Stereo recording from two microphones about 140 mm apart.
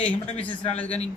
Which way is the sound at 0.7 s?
10° left (ahead or behind).